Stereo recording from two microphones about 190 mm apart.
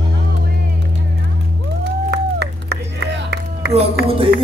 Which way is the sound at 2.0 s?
60° right (ahead or behind).